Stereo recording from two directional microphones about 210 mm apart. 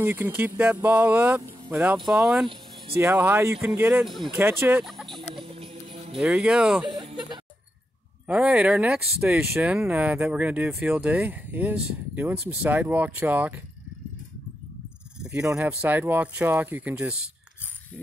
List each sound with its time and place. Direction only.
0.0 s speech: 10° right (ahead or behind)
4.4 s speech: 10° right (ahead or behind)
4.8 s chicken: centre (ahead or behind)
5.3 s music: 25° right (ahead or behind)
6.1 s speech: 5° right (ahead or behind)
6.9 s a sound: 20° right (ahead or behind)
8.3 s speech: 5° right (ahead or behind)
15.2 s speech: 5° right (ahead or behind)